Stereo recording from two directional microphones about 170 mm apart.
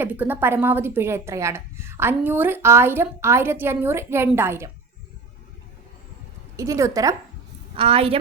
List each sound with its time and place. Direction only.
0.0 s a woman's voice: 10° right (ahead or behind)
6.6 s a woman's voice: 15° right (ahead or behind)
7.8 s a woman's voice: 35° right (ahead or behind)